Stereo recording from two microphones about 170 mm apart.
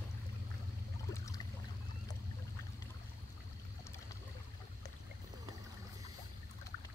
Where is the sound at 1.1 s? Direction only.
20° left (ahead or behind).